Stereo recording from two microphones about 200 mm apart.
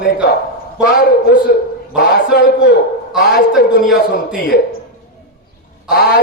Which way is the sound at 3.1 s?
Centre (ahead or behind).